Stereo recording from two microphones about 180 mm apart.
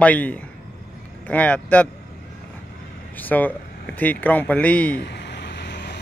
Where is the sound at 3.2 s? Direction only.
10° left (ahead or behind).